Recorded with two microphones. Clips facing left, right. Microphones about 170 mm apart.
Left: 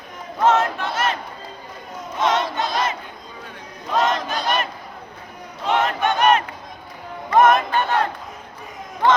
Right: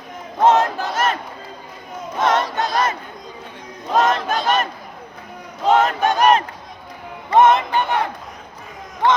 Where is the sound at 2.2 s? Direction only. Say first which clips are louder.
Right 2 dB; 50° right (ahead or behind).